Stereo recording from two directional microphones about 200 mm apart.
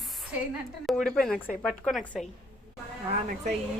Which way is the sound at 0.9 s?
Centre (ahead or behind).